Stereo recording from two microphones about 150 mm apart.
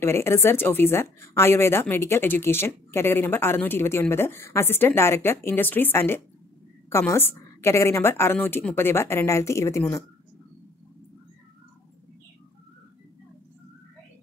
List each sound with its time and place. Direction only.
0.0 s a woman's voice: 15° left (ahead or behind)